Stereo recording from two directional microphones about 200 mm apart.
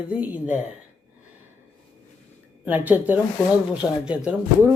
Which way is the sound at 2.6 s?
10° right (ahead or behind).